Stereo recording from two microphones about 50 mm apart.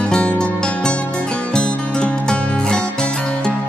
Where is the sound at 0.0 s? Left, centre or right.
Left.